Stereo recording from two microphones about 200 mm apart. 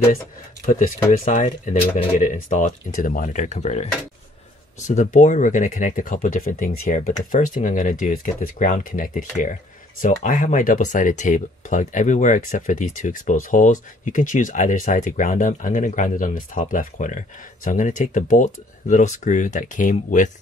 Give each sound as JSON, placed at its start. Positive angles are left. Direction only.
{"t": 0.7, "sound": "speech", "side_deg": 40}